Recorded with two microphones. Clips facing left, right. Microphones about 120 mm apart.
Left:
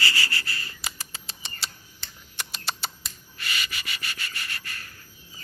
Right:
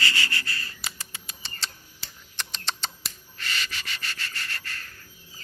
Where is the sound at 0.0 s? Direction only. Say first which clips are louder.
Even; 35° left (ahead or behind).